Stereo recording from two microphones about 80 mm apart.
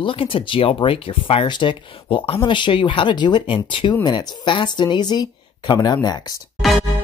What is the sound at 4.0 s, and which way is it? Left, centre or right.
Speech, left.